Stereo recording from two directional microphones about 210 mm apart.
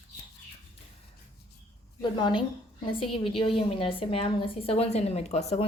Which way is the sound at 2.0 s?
20° left (ahead or behind).